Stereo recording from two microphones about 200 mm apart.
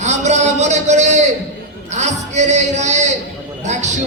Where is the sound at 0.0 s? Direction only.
35° right (ahead or behind).